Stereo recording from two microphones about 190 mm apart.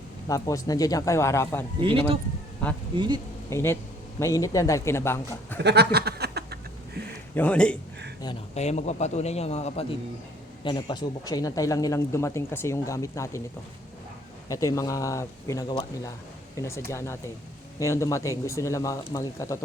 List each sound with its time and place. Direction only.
0.3 s speech: 15° left (ahead or behind)
1.8 s speech: 30° right (ahead or behind)
3.5 s speech: 15° left (ahead or behind)
5.6 s a sound: 60° right (ahead or behind)
7.3 s speech: 5° left (ahead or behind)
8.5 s a man's voice: 35° left (ahead or behind)
10.6 s speech: 25° left (ahead or behind)
14.4 s speech: 20° left (ahead or behind)